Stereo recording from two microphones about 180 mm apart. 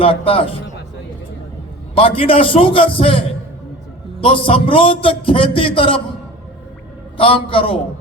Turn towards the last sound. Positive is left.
turn(degrees=30)  # may be behind; listen again after turning